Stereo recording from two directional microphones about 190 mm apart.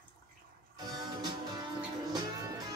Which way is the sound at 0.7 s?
20° right (ahead or behind).